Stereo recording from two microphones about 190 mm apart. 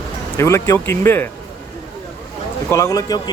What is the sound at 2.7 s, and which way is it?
Speech, 15° left (ahead or behind).